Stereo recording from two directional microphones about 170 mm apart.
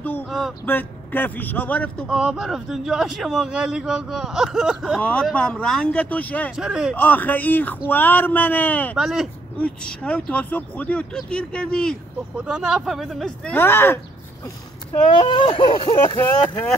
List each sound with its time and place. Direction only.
0.7 s a man's voice: 10° left (ahead or behind)
2.0 s a man's voice: 5° right (ahead or behind)
6.5 s a man's voice: 5° right (ahead or behind)
7.0 s a man's voice: 10° left (ahead or behind)
8.9 s a man's voice: 5° right (ahead or behind)
9.6 s a man's voice: 5° left (ahead or behind)
13.6 s a man's voice: 15° left (ahead or behind)
14.9 s speech: 30° left (ahead or behind)
16.2 s a man's voice: 15° left (ahead or behind)